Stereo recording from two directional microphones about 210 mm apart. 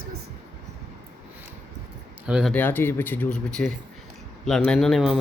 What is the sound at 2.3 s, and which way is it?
Speech, 5° right (ahead or behind).